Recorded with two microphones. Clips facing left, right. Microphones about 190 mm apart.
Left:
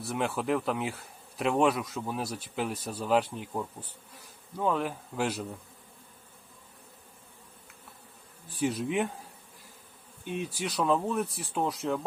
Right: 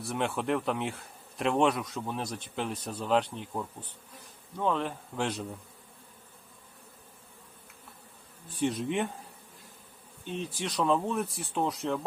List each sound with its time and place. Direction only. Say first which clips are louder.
0.0 s bee: even; centre (ahead or behind)
8.5 s bee: left 1 dB; centre (ahead or behind)
10.2 s bee: left 1 dB; 10° left (ahead or behind)